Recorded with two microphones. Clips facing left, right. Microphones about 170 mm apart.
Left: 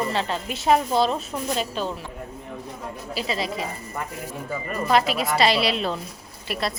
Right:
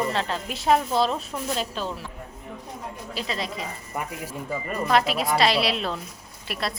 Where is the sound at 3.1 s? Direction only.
5° left (ahead or behind).